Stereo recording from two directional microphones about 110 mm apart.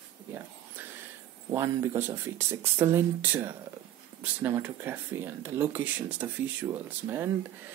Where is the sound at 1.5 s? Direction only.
30° right (ahead or behind).